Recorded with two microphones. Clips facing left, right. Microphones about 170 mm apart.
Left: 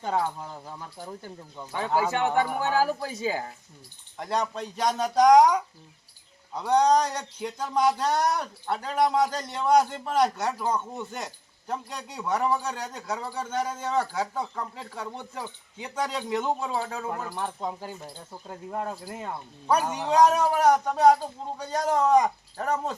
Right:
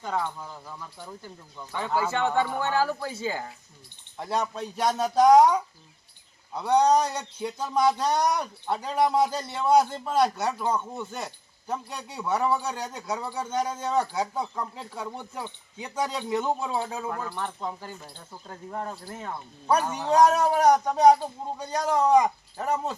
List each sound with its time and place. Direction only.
0.2 s speech: 35° left (ahead or behind)
1.7 s speech: 15° left (ahead or behind)
4.2 s speech: 5° right (ahead or behind)
6.7 s a man's voice: 10° right (ahead or behind)
7.7 s speech: 10° left (ahead or behind)
7.9 s a man's voice: 10° right (ahead or behind)
17.1 s speech: 10° left (ahead or behind)
20.8 s a man's voice: 15° right (ahead or behind)